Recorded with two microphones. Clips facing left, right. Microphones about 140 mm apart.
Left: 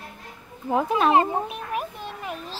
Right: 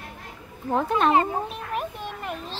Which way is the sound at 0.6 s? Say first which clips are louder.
Left 1 dB; 5° left (ahead or behind).